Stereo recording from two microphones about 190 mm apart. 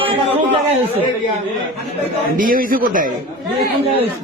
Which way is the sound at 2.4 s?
45° right (ahead or behind).